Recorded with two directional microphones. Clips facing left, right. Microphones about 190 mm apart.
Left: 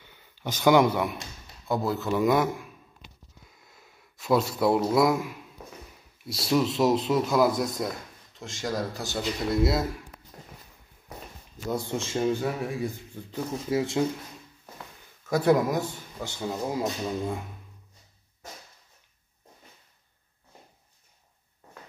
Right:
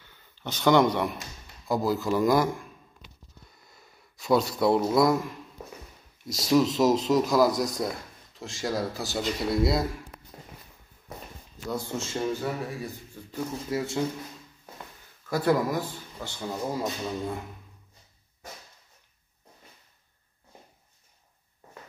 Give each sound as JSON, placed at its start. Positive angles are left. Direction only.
{"t": 0.0, "sound": "a sound", "side_deg": 10}
{"t": 1.7, "sound": "speech", "side_deg": 0}
{"t": 3.4, "sound": "a sound", "side_deg": 0}
{"t": 6.2, "sound": "speech", "side_deg": 5}
{"t": 11.7, "sound": "speech", "side_deg": 15}
{"t": 15.2, "sound": "speech", "side_deg": 20}
{"t": 16.3, "sound": "speech", "side_deg": 10}